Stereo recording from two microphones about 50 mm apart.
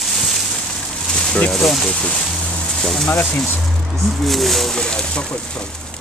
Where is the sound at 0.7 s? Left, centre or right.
Centre.